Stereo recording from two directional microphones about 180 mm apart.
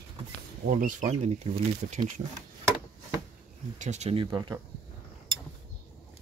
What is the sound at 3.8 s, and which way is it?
Speech, 40° right (ahead or behind).